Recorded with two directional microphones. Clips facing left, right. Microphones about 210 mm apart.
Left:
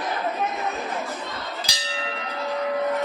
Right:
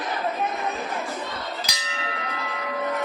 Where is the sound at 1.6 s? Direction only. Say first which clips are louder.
Left 2 dB; 30° left (ahead or behind).